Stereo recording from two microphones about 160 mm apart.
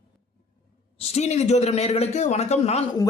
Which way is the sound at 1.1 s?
45° left (ahead or behind).